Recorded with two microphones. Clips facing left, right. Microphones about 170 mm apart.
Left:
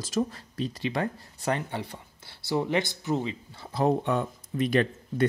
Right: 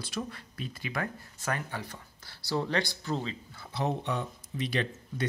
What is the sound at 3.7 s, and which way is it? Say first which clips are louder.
Speech: left 7 dB; 50° left (ahead or behind).